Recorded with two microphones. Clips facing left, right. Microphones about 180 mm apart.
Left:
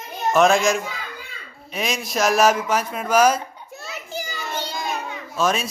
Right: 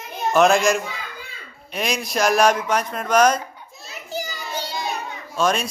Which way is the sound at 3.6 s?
70° left (ahead or behind).